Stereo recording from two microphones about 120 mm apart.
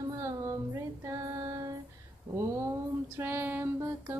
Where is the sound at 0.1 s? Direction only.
25° right (ahead or behind).